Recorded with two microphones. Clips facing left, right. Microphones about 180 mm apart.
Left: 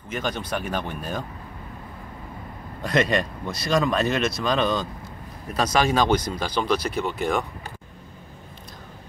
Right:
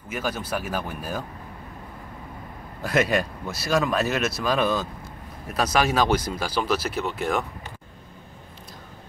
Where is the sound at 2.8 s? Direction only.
5° right (ahead or behind).